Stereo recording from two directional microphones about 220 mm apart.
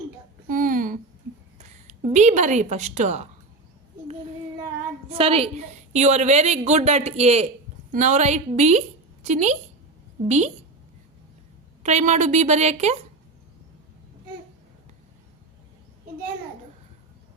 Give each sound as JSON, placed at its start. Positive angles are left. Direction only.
{"t": 0.4, "sound": "a sound", "side_deg": -40}
{"t": 1.9, "sound": "a woman's voice", "side_deg": -30}
{"t": 5.1, "sound": "a woman's voice", "side_deg": -25}
{"t": 11.8, "sound": "a woman's voice", "side_deg": -30}